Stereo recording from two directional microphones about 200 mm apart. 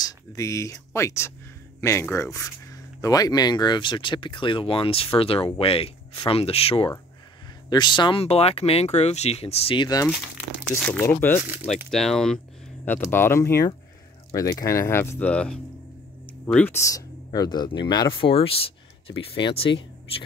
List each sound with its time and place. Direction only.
0.0 s speech: 15° left (ahead or behind)
10.8 s speech: 10° left (ahead or behind); by 19.7 s 30° left (ahead or behind)